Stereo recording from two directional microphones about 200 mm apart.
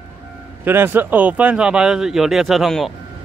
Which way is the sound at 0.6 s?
10° right (ahead or behind).